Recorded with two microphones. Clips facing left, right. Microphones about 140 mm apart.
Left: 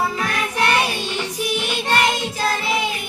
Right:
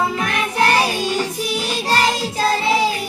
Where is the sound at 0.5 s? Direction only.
35° right (ahead or behind).